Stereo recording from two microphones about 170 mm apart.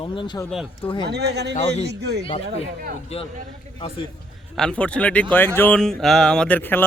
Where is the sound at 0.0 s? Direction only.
30° left (ahead or behind).